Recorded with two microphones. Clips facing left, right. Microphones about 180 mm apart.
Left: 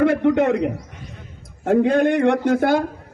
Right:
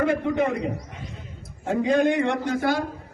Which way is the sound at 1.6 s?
60° left (ahead or behind).